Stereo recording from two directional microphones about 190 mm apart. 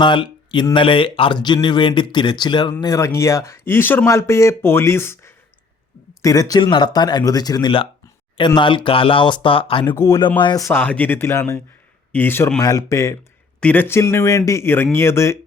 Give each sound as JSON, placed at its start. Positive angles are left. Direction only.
{"t": 0.0, "sound": "speech", "side_deg": 25}
{"t": 9.8, "sound": "speech", "side_deg": 15}